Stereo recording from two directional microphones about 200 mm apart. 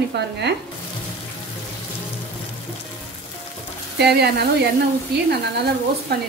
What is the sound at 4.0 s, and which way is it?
Speech, 55° right (ahead or behind).